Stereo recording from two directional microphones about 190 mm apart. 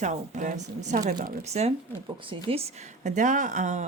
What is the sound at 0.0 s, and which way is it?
Speech, 40° right (ahead or behind).